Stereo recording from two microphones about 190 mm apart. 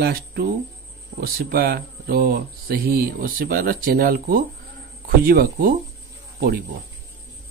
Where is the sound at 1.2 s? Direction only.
50° right (ahead or behind).